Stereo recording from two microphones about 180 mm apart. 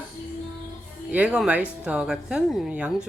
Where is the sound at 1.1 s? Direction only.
5° right (ahead or behind).